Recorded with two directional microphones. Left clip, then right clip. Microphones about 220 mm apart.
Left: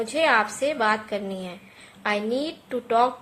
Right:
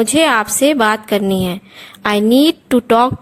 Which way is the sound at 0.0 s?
45° right (ahead or behind).